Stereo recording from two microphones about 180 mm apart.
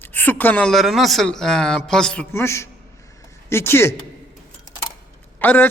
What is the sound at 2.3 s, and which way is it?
A man's voice, 15° left (ahead or behind).